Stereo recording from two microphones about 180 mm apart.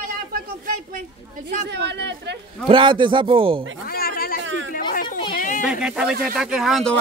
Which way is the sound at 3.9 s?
55° left (ahead or behind).